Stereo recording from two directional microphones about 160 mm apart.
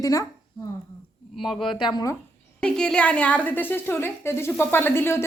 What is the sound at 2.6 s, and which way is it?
A woman's voice, 5° left (ahead or behind).